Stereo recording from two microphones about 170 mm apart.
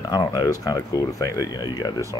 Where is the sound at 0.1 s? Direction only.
25° left (ahead or behind).